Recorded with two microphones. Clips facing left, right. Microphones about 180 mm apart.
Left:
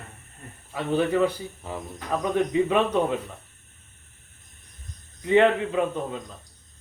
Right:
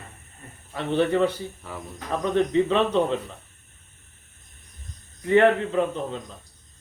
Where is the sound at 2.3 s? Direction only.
10° left (ahead or behind).